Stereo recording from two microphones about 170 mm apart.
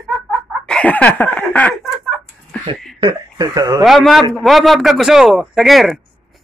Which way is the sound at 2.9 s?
25° right (ahead or behind).